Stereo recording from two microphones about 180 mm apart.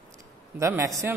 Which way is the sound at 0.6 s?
15° right (ahead or behind).